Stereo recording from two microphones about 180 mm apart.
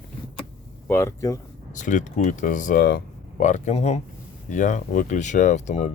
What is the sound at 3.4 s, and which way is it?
Speech, 40° left (ahead or behind).